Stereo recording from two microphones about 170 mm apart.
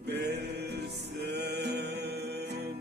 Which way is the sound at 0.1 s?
75° right (ahead or behind).